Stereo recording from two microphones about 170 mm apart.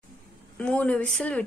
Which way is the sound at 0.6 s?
5° left (ahead or behind).